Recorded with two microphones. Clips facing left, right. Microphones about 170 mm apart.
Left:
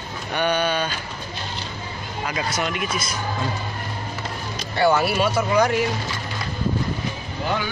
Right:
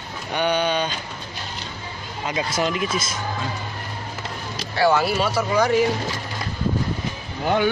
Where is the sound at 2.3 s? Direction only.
25° right (ahead or behind).